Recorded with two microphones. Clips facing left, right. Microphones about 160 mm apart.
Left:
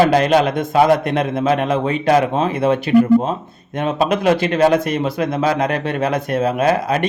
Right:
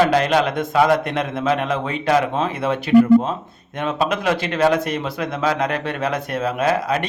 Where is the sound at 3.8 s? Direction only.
30° left (ahead or behind).